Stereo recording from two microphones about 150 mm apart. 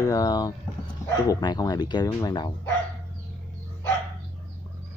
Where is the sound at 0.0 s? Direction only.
25° left (ahead or behind).